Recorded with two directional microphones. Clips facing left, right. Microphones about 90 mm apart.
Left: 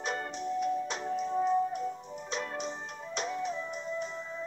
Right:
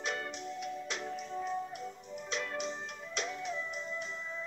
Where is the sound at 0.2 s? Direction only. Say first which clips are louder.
Left 7 dB; 30° left (ahead or behind).